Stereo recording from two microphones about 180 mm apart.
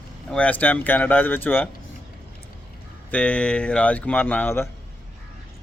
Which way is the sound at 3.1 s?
5° left (ahead or behind).